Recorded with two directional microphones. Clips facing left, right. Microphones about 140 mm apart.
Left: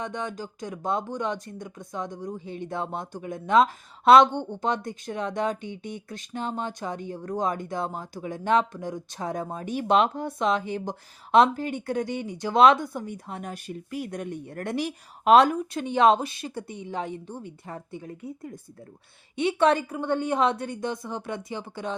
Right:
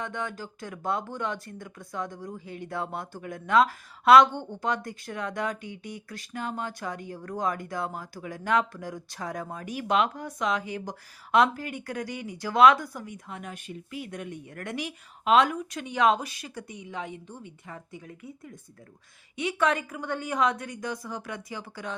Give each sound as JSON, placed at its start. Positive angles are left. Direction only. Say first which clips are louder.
{"t": 0.0, "sound": "speech", "louder": "left 2 dB", "side_deg": 20}